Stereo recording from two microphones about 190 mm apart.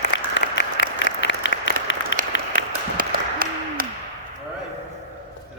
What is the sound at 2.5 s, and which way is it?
Applause, 50° right (ahead or behind).